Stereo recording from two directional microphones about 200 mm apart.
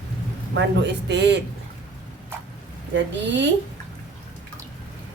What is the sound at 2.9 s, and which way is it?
Speech, 65° right (ahead or behind).